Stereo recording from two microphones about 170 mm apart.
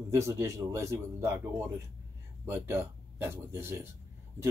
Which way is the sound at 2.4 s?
15° right (ahead or behind).